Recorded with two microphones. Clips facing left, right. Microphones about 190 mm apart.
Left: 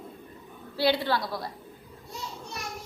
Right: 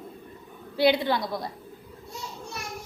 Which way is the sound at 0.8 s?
20° right (ahead or behind).